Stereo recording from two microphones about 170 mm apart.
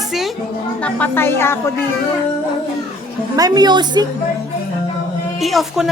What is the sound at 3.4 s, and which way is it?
Speech, 25° right (ahead or behind).